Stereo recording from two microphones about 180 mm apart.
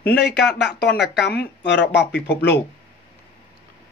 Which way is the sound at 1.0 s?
70° left (ahead or behind).